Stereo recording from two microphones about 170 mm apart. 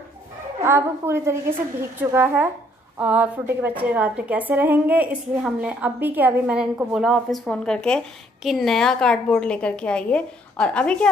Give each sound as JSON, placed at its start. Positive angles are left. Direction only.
{"t": 0.7, "sound": "a woman's voice", "side_deg": -15}